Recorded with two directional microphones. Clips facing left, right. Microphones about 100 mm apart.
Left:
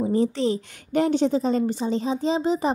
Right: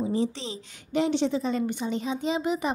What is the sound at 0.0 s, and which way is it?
A woman's voice, 45° left (ahead or behind).